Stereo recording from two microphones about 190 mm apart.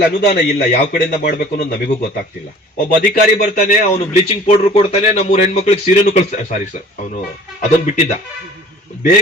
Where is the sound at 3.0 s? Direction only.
40° left (ahead or behind).